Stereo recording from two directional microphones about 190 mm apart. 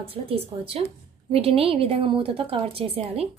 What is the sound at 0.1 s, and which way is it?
A woman's voice, 30° right (ahead or behind).